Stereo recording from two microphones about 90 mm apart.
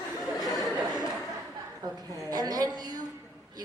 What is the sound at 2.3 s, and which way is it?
Speech, 45° right (ahead or behind).